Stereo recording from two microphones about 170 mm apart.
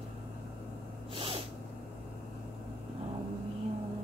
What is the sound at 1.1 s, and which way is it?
Sneeze, 30° right (ahead or behind).